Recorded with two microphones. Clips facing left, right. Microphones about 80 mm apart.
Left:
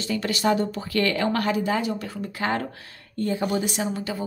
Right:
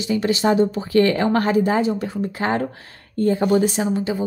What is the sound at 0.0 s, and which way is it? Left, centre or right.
A woman's voice, right.